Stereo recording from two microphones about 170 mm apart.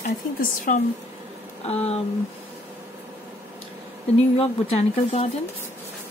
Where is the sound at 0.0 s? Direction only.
50° left (ahead or behind).